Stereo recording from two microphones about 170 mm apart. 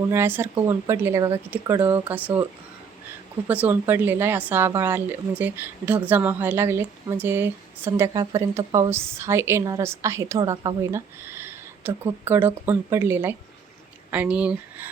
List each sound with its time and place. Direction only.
0.1 s speech: 15° right (ahead or behind)
3.4 s speech: 10° right (ahead or behind)
11.3 s speech: 15° right (ahead or behind)